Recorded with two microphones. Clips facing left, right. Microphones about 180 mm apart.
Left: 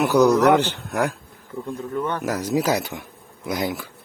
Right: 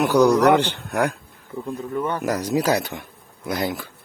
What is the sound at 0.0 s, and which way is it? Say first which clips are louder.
Speech: even; 10° left (ahead or behind).